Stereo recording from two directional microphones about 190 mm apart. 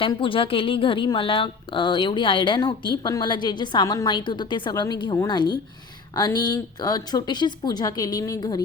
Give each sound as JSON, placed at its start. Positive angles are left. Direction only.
{"t": 0.0, "sound": "a woman's voice", "side_deg": 25}